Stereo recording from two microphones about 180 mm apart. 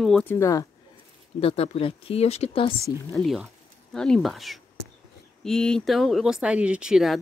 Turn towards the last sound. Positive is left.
turn(degrees=0)  # may be behind; listen again after turning